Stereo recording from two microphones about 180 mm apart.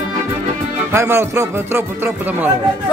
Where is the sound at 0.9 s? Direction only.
15° right (ahead or behind).